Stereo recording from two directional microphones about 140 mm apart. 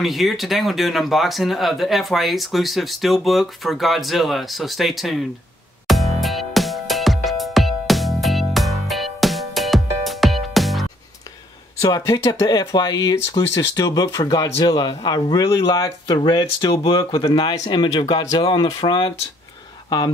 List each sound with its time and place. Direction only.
0.0 s speech: centre (ahead or behind)
5.9 s music: centre (ahead or behind)
11.8 s speech: 25° left (ahead or behind)